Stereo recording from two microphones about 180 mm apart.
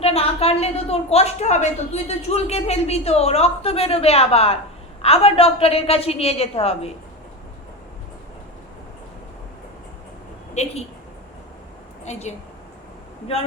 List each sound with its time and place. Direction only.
0.0 s a woman's voice: 35° left (ahead or behind)
10.5 s a woman's voice: 40° left (ahead or behind)
12.1 s a woman's voice: 35° left (ahead or behind)